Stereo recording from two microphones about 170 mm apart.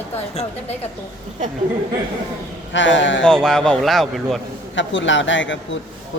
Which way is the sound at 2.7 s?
90° left.